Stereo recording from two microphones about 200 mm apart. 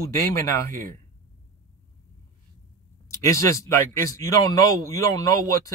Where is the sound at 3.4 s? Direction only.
15° left (ahead or behind).